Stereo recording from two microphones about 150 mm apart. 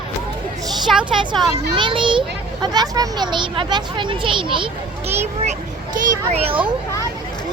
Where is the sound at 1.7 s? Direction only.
35° right (ahead or behind).